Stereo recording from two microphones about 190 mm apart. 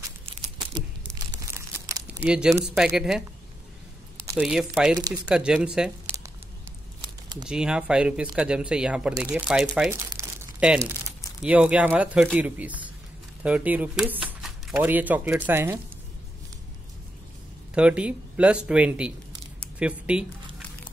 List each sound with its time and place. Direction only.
0.7 s crumpling: 20° right (ahead or behind); by 2.5 s 5° right (ahead or behind)
2.6 s speech: centre (ahead or behind)
4.4 s speech: 5° right (ahead or behind)
4.9 s speech: 20° right (ahead or behind)
5.2 s speech: 5° right (ahead or behind)
7.4 s speech: 5° right (ahead or behind)
10.1 s crumpling: 5° right (ahead or behind)
11.4 s speech: 5° right (ahead or behind)
17.7 s speech: 5° right (ahead or behind)